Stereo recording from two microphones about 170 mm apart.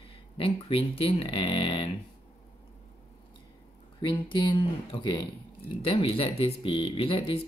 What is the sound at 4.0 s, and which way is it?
Speech, 30° left (ahead or behind).